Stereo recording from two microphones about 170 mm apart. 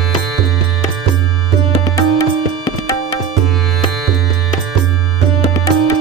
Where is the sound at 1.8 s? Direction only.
20° left (ahead or behind).